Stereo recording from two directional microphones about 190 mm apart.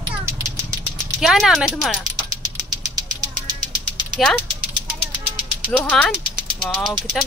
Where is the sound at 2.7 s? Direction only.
20° right (ahead or behind).